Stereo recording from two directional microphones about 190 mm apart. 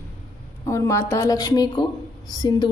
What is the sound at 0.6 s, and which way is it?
Speech, 15° left (ahead or behind).